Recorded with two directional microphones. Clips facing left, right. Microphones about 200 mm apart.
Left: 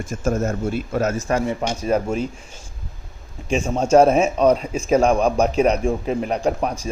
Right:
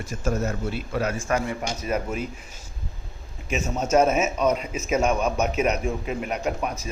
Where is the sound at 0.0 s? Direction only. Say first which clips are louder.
Left 4 dB; 50° left (ahead or behind); by 2.0 s 30° left (ahead or behind).